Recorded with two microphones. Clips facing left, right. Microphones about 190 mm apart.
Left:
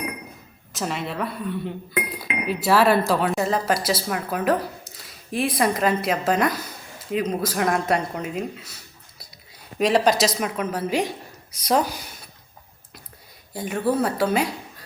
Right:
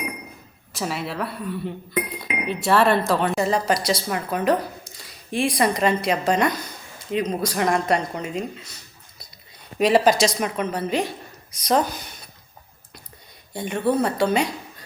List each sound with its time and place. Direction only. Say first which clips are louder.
0.7 s speech: even; centre (ahead or behind)
13.6 s speech: right 1 dB; 5° left (ahead or behind)